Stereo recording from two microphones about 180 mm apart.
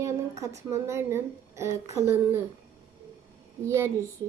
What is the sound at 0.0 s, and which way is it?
Speech, 15° right (ahead or behind).